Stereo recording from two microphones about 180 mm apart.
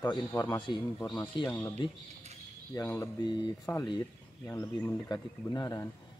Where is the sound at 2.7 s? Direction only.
15° left (ahead or behind).